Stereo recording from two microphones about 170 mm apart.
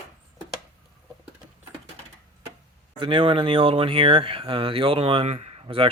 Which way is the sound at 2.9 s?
30° right (ahead or behind).